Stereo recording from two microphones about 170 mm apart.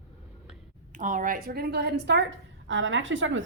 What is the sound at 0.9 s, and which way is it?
A woman's voice, 50° right (ahead or behind).